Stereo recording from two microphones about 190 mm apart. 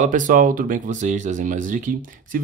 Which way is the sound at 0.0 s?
45° right (ahead or behind).